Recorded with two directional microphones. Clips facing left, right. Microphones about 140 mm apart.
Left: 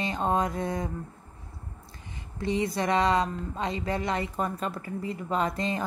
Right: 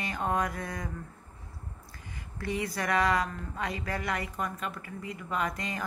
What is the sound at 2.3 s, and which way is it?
Speech, 20° left (ahead or behind).